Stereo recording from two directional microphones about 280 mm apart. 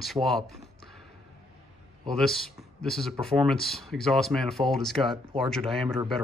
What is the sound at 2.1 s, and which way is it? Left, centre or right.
Speech, centre.